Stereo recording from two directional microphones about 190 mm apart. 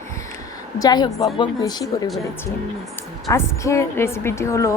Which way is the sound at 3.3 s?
15° left (ahead or behind).